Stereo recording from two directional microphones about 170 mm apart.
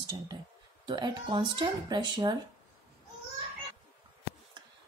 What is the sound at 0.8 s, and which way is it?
A woman's voice, 25° right (ahead or behind).